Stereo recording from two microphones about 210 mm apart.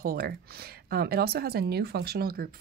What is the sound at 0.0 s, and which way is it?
A woman's voice, 45° right (ahead or behind).